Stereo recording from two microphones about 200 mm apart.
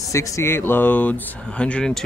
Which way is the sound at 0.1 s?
15° left (ahead or behind).